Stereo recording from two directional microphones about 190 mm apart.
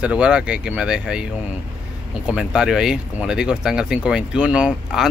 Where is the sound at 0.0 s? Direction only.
5° right (ahead or behind).